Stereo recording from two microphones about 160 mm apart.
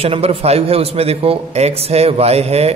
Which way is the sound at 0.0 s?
35° right (ahead or behind).